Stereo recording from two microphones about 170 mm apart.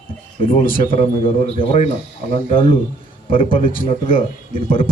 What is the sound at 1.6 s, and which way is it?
A man's voice, 35° left (ahead or behind).